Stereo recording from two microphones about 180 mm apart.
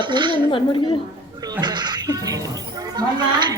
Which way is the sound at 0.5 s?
30° left (ahead or behind).